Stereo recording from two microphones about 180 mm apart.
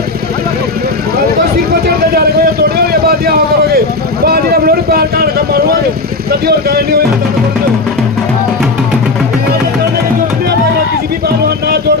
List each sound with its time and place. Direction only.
2.9 s a sound: 60° right (ahead or behind)
4.3 s vehicle: 60° right (ahead or behind)
6.4 s speech: 60° right (ahead or behind)